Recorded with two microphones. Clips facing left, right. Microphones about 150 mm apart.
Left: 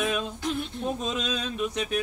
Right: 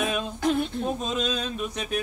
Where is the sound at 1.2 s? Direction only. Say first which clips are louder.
Right 2 dB; 35° right (ahead or behind).